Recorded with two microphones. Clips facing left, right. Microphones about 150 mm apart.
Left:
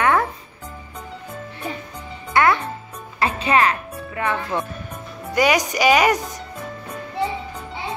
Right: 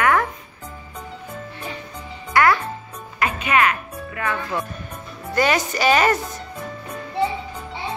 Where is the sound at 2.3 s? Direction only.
20° left (ahead or behind).